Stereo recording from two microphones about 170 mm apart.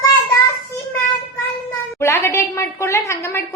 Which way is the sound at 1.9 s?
15° left (ahead or behind).